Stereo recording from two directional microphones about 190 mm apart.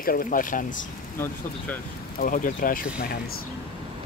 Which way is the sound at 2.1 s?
45° left (ahead or behind).